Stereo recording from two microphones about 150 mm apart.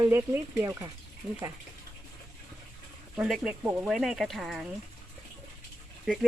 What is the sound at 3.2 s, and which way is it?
Speech, centre (ahead or behind).